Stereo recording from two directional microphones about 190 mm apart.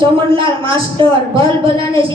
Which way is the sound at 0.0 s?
25° right (ahead or behind).